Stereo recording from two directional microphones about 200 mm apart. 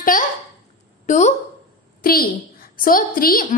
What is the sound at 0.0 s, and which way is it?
A child's voice, 40° left (ahead or behind).